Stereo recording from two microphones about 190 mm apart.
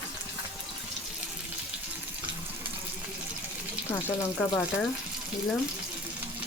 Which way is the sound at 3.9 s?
10° left (ahead or behind).